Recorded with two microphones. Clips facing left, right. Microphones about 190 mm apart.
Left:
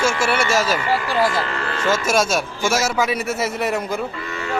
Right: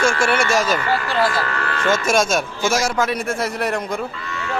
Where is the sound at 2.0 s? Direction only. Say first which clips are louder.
Right 1 dB; 5° left (ahead or behind).